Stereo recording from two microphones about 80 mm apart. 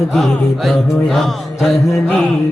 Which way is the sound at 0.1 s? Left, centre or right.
Centre.